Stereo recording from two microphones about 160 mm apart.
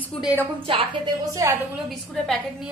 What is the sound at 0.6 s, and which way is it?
Speech, 30° right (ahead or behind).